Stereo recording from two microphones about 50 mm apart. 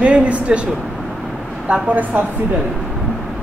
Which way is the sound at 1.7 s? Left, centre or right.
Right.